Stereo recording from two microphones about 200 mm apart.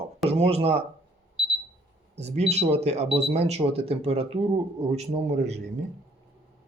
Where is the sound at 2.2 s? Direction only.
35° right (ahead or behind).